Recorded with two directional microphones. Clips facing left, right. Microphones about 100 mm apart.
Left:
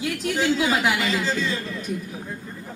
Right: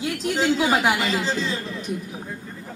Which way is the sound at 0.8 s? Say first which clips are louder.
Right 1 dB; 45° right (ahead or behind).